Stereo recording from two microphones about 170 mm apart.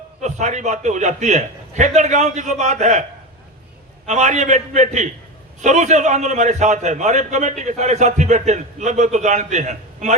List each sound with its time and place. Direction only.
0.2 s a man's voice: 45° right (ahead or behind)
4.0 s a man's voice: 45° right (ahead or behind)